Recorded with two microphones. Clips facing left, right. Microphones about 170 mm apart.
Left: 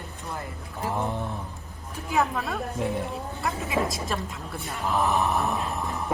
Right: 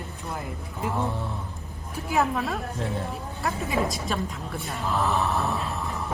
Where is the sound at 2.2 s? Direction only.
Centre (ahead or behind).